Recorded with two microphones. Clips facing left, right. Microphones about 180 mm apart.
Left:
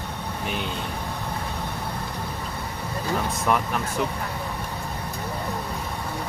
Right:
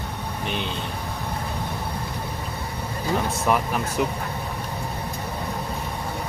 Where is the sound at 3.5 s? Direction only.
5° right (ahead or behind).